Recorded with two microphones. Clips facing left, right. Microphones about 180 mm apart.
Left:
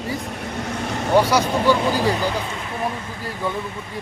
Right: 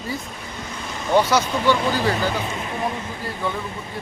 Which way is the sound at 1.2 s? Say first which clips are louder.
Left 1 dB; 10° left (ahead or behind).